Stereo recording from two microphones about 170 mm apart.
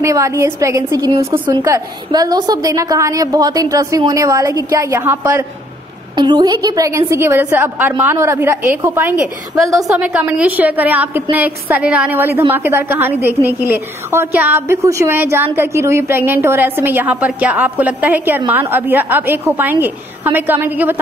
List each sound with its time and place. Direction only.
0.0 s a woman's voice: 20° right (ahead or behind)